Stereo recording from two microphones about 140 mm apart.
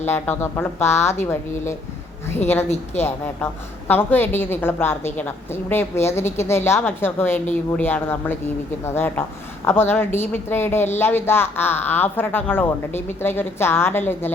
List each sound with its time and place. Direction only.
0.0 s speech: 15° left (ahead or behind)
2.3 s speech: 15° left (ahead or behind)